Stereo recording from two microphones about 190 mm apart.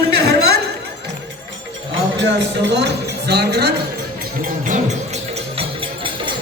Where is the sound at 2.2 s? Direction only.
65° right (ahead or behind).